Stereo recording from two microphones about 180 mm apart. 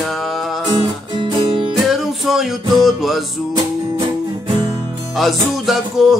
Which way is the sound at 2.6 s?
20° right (ahead or behind).